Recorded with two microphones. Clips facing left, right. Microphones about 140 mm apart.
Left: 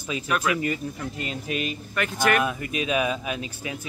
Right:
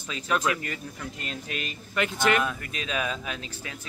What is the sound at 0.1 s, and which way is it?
Speech, 10° left (ahead or behind).